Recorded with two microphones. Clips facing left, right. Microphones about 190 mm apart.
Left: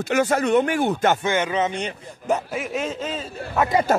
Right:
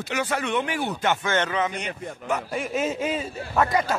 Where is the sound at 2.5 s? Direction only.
Centre (ahead or behind).